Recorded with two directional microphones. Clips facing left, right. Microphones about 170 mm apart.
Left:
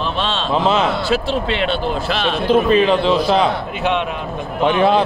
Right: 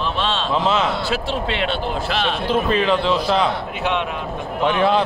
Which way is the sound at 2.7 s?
20° left (ahead or behind).